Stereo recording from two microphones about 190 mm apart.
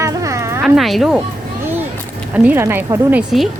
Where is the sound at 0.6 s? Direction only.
Centre (ahead or behind).